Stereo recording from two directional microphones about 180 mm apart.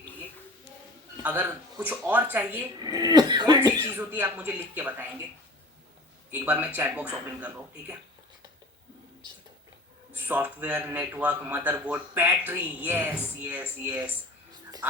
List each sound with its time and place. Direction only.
1.1 s a sound: 10° right (ahead or behind)
1.7 s a man's voice: 10° right (ahead or behind)
2.7 s speech: 20° right (ahead or behind)
3.9 s a man's voice: 10° right (ahead or behind)
6.3 s a man's voice: 10° right (ahead or behind)
10.2 s a man's voice: 10° right (ahead or behind)